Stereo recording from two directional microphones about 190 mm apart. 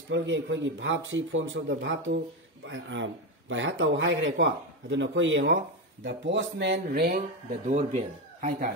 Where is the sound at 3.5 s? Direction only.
85° right; by 7.2 s 55° right (ahead or behind).